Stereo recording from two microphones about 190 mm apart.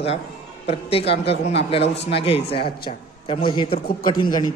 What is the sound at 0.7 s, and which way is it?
A man's voice, 30° left (ahead or behind).